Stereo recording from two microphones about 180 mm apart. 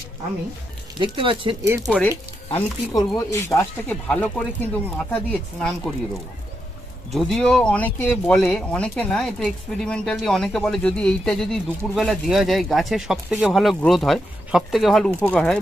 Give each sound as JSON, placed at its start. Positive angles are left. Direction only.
{"t": 0.9, "sound": "speech", "side_deg": -30}
{"t": 1.6, "sound": "speech", "side_deg": -15}
{"t": 1.9, "sound": "speech", "side_deg": 5}
{"t": 3.2, "sound": "speech", "side_deg": 15}
{"t": 7.1, "sound": "speech", "side_deg": 0}